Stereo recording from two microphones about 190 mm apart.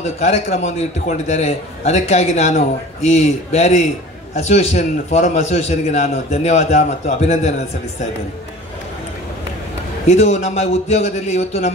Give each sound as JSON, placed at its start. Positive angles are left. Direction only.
{"t": 0.2, "sound": "a man's voice", "side_deg": 35}
{"t": 10.0, "sound": "a man's voice", "side_deg": 35}